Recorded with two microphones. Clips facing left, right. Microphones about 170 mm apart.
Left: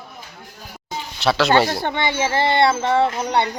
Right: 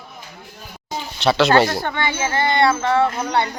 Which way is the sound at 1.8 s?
25° left (ahead or behind).